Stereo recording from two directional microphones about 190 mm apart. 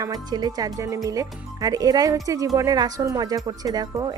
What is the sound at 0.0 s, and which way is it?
Music, 20° right (ahead or behind).